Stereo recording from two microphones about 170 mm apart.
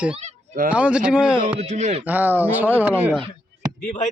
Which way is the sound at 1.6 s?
45° right (ahead or behind).